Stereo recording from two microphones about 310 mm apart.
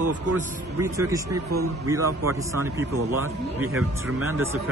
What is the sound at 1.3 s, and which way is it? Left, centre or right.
Speech, right.